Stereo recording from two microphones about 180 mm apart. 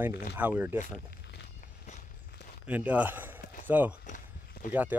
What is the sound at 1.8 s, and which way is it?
Walk, 40° left (ahead or behind).